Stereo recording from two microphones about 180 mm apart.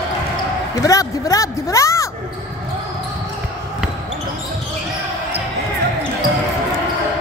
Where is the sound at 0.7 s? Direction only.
20° left (ahead or behind).